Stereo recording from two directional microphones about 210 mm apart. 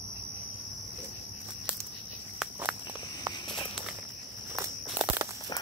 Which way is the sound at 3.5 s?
Centre (ahead or behind).